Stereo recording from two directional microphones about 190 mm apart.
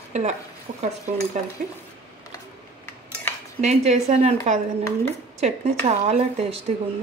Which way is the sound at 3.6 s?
35° right (ahead or behind).